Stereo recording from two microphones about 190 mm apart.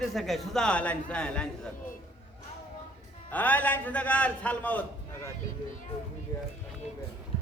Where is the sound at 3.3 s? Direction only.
10° left (ahead or behind).